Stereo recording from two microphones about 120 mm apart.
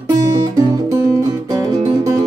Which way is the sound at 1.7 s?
30° right (ahead or behind).